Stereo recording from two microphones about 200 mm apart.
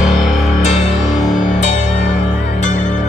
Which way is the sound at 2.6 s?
35° left (ahead or behind).